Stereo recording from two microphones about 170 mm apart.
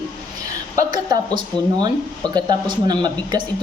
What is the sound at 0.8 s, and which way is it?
Speech, 20° right (ahead or behind).